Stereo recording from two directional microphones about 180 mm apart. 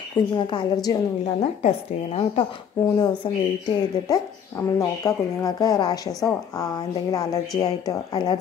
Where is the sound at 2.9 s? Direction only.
20° left (ahead or behind).